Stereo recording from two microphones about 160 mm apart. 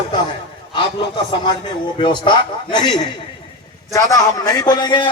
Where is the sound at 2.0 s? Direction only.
30° left (ahead or behind).